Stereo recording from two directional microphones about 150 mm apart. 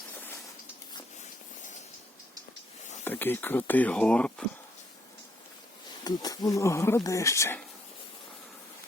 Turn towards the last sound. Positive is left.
turn(degrees=15)  # may be behind; listen again after turning